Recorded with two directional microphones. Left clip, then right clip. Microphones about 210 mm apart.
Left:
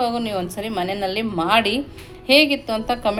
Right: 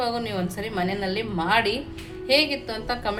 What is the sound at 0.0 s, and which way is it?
A woman's voice, 25° left (ahead or behind).